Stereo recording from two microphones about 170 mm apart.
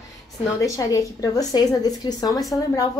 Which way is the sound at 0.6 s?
20° left (ahead or behind).